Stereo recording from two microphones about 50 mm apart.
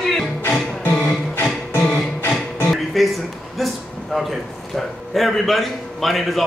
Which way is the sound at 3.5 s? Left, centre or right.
Centre.